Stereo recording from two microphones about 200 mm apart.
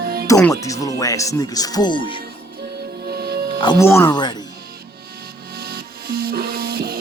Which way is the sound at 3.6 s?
25° left (ahead or behind).